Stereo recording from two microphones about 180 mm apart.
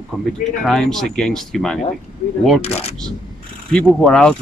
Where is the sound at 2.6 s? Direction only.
35° left (ahead or behind).